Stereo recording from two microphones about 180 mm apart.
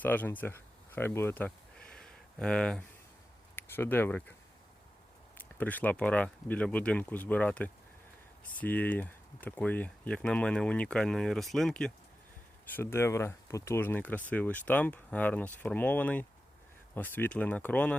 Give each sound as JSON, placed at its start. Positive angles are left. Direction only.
{"t": 0.0, "sound": "speech", "side_deg": 10}
{"t": 5.4, "sound": "speech", "side_deg": 10}